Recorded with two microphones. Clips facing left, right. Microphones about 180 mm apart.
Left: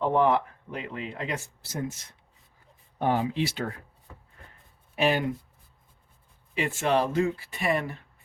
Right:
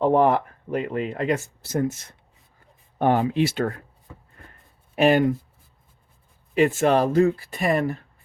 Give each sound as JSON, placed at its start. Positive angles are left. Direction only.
{"t": 0.1, "sound": "speech", "side_deg": -45}
{"t": 3.0, "sound": "speech", "side_deg": -60}
{"t": 4.9, "sound": "speech", "side_deg": -50}
{"t": 6.5, "sound": "speech", "side_deg": -45}